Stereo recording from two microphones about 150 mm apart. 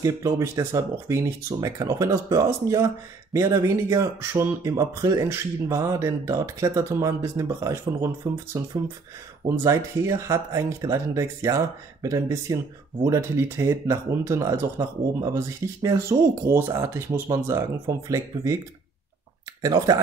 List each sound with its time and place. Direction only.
0.0 s speech: 20° right (ahead or behind)
19.6 s speech: 25° right (ahead or behind)